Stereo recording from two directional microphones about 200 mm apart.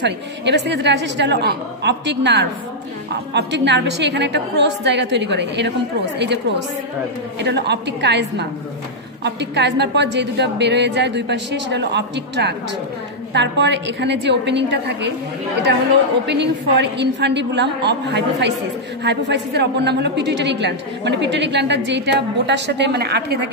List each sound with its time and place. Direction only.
0.0 s a woman's voice: 60° right (ahead or behind)
16.3 s a woman's voice: 60° right (ahead or behind)